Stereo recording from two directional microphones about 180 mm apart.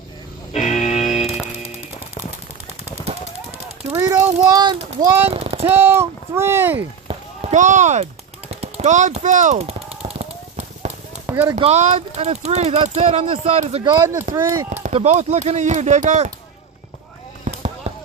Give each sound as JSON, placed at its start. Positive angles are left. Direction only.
{"t": 0.5, "sound": "music", "side_deg": 40}
{"t": 2.8, "sound": "machine gun", "side_deg": -35}
{"t": 3.9, "sound": "a child's voice", "side_deg": -15}
{"t": 5.3, "sound": "a sound", "side_deg": -35}
{"t": 5.6, "sound": "speech", "side_deg": -15}
{"t": 7.1, "sound": "a sound", "side_deg": -40}
{"t": 8.4, "sound": "machine gun", "side_deg": -35}
{"t": 11.3, "sound": "speech", "side_deg": -10}
{"t": 11.5, "sound": "speech", "side_deg": -40}
{"t": 14.7, "sound": "speech", "side_deg": -40}
{"t": 17.4, "sound": "a sound", "side_deg": -35}